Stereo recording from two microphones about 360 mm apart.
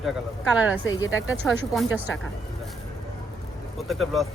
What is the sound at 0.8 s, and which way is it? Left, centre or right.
Speech, left.